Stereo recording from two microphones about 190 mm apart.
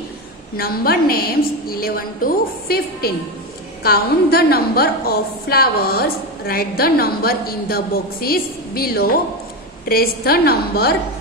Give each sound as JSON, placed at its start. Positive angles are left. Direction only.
{"t": 0.6, "sound": "a woman's voice", "side_deg": 50}